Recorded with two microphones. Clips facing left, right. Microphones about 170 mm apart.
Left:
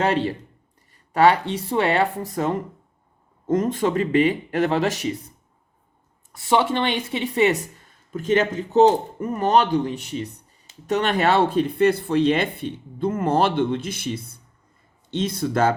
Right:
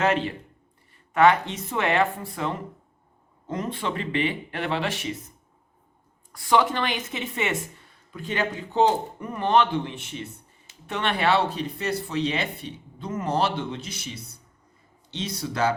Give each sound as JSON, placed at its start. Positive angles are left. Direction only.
{"t": 0.0, "sound": "a woman's voice", "side_deg": 35}
{"t": 6.3, "sound": "a woman's voice", "side_deg": 25}